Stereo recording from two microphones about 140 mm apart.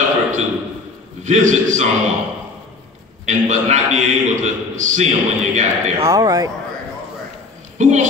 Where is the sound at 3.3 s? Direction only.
55° right (ahead or behind).